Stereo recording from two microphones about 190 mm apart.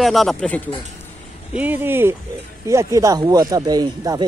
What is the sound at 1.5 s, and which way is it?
Speech, 10° right (ahead or behind).